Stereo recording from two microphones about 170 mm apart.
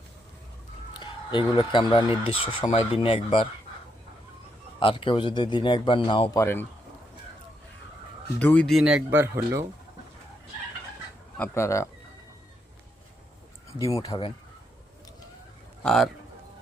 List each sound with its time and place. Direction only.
0.9 s speech: 25° left (ahead or behind)
4.8 s speech: 30° left (ahead or behind)
6.3 s speech: 15° left (ahead or behind)
8.4 s speech: 10° left (ahead or behind)
8.8 s speech: 5° right (ahead or behind)
11.3 s speech: 15° left (ahead or behind)
13.7 s speech: 20° left (ahead or behind)
15.8 s a man's voice: 5° left (ahead or behind)